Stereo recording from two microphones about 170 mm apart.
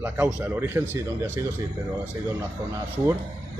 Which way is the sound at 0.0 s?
10° right (ahead or behind).